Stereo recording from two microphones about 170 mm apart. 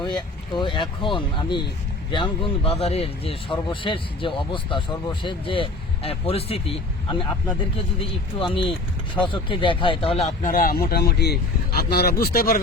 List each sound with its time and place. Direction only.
0.2 s speech: 30° left (ahead or behind)
10.5 s speech: 60° left (ahead or behind)